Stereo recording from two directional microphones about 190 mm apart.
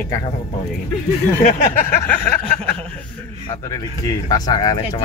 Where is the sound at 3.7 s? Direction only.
20° left (ahead or behind).